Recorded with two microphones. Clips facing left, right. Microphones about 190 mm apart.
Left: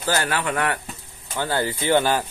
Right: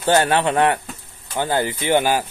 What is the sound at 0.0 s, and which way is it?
A man's voice, 25° right (ahead or behind).